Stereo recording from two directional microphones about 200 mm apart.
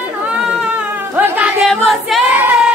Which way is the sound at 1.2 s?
5° right (ahead or behind).